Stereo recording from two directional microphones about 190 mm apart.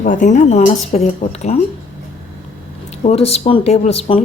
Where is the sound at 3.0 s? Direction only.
35° left (ahead or behind).